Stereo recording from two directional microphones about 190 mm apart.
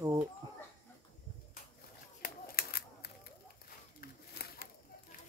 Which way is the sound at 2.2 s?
55° left (ahead or behind).